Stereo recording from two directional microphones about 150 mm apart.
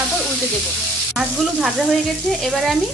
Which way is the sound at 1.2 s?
5° right (ahead or behind).